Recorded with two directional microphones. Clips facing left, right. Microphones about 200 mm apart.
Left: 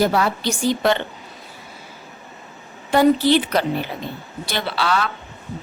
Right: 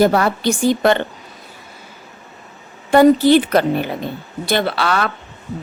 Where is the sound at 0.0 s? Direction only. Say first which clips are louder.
Right 4 dB; 50° right (ahead or behind).